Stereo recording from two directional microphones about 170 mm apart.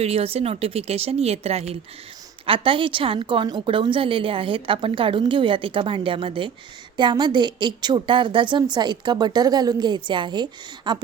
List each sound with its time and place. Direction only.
0.0 s a woman's voice: 35° right (ahead or behind)